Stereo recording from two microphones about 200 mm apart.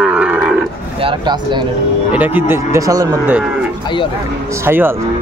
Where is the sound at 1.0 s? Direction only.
25° right (ahead or behind).